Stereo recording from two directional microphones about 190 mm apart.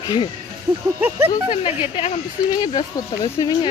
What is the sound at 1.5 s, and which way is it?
A woman's voice, 30° left (ahead or behind).